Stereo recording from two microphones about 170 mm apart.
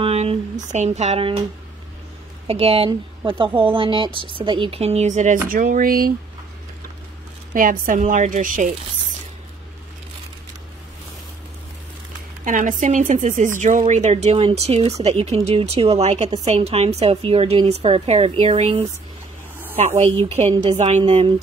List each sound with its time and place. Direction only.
0.0 s speech: 35° right (ahead or behind)
2.4 s speech: 35° right (ahead or behind); by 6.1 s 60° right (ahead or behind)
7.5 s speech: 50° right (ahead or behind)
12.4 s speech: 50° right (ahead or behind)